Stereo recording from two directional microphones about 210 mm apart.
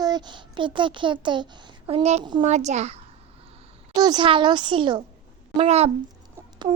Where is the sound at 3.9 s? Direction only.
20° right (ahead or behind).